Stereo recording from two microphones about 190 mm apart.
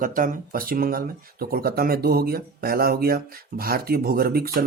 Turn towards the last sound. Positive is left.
turn(degrees=-50)  # may be behind; listen again after turning